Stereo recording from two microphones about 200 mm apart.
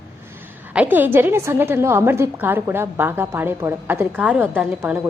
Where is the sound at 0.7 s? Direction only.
10° right (ahead or behind).